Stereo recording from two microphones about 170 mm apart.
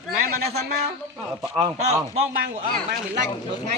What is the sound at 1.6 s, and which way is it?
Speech, 20° right (ahead or behind).